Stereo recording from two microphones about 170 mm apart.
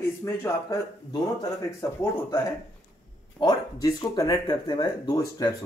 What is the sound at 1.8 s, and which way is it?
Speech, 15° left (ahead or behind).